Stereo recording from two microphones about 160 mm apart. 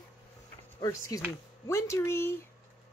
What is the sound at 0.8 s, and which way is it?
Speech, 20° left (ahead or behind).